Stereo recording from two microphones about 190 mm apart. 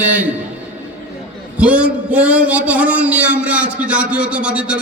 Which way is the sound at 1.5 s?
5° right (ahead or behind).